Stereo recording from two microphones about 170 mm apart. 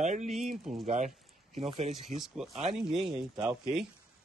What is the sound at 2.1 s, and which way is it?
Speech, centre (ahead or behind).